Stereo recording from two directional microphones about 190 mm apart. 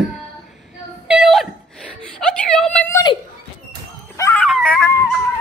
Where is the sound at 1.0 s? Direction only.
5° right (ahead or behind).